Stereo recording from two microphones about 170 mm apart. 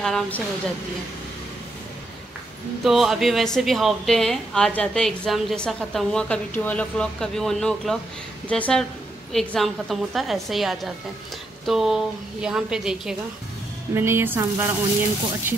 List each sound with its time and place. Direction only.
0.0 s a woman's voice: 5° left (ahead or behind)
2.8 s a woman's voice: centre (ahead or behind)